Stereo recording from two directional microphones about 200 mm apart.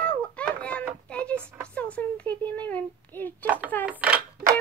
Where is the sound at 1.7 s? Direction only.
5° left (ahead or behind).